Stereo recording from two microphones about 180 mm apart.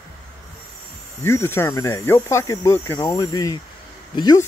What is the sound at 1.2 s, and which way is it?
Speech, 15° left (ahead or behind).